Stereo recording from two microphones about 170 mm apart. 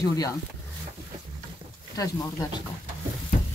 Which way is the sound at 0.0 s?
20° left (ahead or behind).